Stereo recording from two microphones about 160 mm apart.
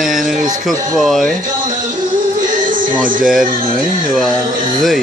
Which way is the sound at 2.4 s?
55° right (ahead or behind).